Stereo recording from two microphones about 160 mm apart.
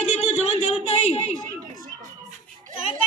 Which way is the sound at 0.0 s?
45° left (ahead or behind).